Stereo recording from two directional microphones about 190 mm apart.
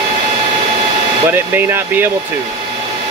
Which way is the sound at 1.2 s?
10° right (ahead or behind).